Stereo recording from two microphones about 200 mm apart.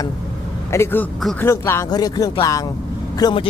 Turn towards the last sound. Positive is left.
turn(degrees=25)  # may be behind; listen again after turning